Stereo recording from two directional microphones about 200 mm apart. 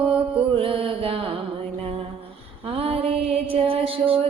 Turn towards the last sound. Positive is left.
turn(degrees=-25)  # may be behind; listen again after turning